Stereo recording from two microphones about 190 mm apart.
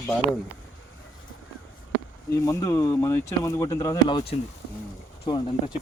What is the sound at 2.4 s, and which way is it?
Speech, 15° left (ahead or behind).